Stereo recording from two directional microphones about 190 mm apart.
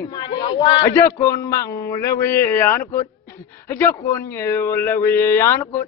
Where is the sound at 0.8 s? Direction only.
15° left (ahead or behind).